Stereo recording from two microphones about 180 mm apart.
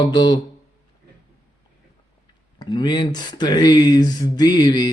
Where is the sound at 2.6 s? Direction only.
25° left (ahead or behind).